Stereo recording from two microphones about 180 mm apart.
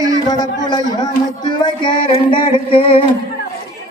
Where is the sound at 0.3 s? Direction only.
20° left (ahead or behind).